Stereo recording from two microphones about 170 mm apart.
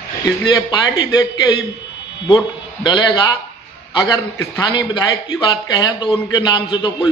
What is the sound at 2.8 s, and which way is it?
A man's voice, 25° left (ahead or behind).